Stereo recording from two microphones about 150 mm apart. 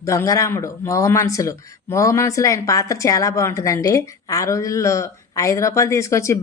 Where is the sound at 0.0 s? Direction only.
20° left (ahead or behind).